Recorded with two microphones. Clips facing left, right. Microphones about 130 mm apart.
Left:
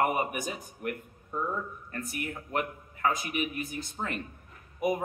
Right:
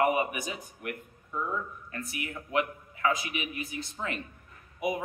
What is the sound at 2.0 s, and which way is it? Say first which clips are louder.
Speech: left 2 dB; 45° left (ahead or behind).